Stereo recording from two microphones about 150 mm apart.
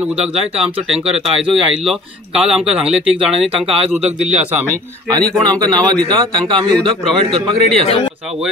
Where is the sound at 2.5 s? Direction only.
5° right (ahead or behind).